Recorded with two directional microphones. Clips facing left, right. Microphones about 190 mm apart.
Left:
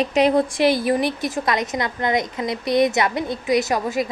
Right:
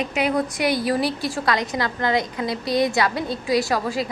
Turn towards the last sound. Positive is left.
turn(degrees=20)  # may be behind; listen again after turning